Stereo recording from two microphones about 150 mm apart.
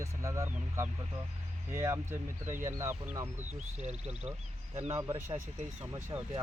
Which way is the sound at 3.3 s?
50° right (ahead or behind).